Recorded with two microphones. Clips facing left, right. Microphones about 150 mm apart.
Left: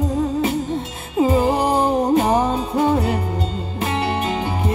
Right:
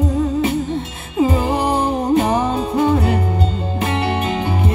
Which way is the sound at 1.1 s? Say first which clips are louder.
Even; 35° left (ahead or behind).